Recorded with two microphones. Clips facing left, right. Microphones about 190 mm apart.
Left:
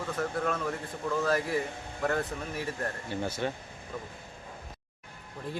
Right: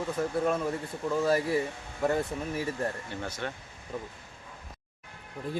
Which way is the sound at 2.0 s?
15° right (ahead or behind).